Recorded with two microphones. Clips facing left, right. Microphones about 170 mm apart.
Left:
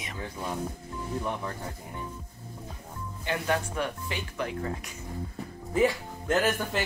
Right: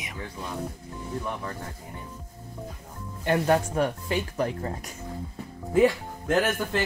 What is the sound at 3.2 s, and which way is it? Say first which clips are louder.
Speech: right 7 dB; 45° right (ahead or behind).